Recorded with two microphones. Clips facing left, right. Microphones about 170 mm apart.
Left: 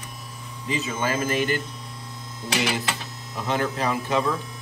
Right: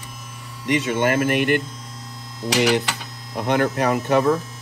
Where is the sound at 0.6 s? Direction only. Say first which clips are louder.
Right 7 dB; 80° right.